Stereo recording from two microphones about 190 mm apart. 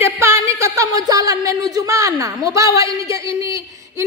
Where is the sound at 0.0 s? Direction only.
15° right (ahead or behind).